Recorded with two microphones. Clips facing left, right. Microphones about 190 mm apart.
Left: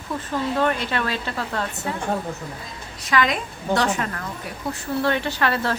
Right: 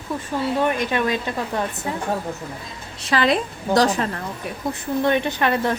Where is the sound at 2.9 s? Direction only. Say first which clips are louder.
Right 3 dB; 30° right (ahead or behind).